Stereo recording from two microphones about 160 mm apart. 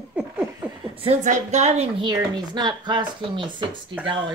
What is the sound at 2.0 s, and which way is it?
Speech, 25° right (ahead or behind).